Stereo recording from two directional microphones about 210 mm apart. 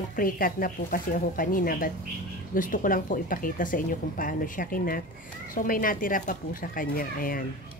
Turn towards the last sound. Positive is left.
turn(degrees=40)  # may be behind; listen again after turning